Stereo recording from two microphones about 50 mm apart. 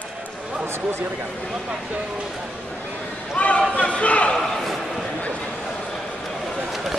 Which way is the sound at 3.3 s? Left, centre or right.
Left.